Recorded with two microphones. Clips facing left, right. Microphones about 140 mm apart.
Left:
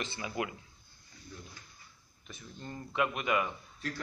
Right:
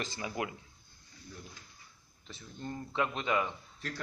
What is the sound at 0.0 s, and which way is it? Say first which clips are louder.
Speech: even; 35° right (ahead or behind).